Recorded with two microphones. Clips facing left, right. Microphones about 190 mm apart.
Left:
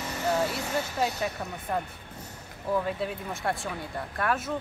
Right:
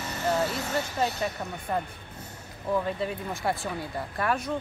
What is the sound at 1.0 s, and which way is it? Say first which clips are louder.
Speech: right 1 dB; centre (ahead or behind).